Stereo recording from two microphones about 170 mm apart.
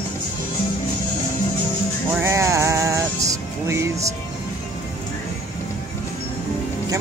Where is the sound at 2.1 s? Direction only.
15° right (ahead or behind).